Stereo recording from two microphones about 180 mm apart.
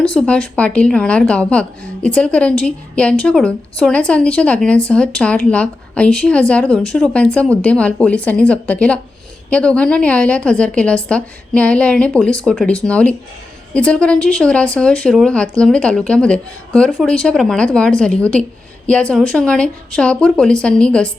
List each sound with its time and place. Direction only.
0.0 s a woman's voice: 5° left (ahead or behind)